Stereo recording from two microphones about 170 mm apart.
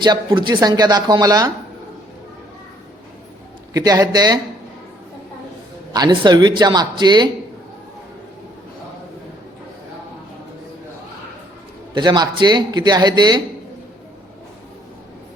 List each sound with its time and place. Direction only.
0.0 s speech: 25° right (ahead or behind)
3.8 s speech: 20° right (ahead or behind)
5.9 s speech: 25° right (ahead or behind)
11.9 s speech: 25° right (ahead or behind)